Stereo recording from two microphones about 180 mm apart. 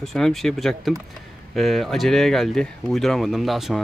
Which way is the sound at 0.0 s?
Centre (ahead or behind).